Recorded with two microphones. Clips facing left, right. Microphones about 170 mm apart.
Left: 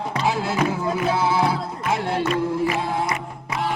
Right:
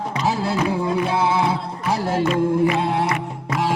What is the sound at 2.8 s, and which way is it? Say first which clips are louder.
Music: right 3 dB; 65° right (ahead or behind).